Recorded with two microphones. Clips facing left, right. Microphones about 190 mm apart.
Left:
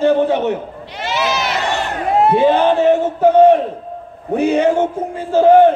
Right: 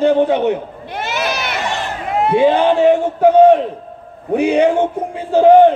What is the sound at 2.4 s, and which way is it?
A man's voice, 15° right (ahead or behind).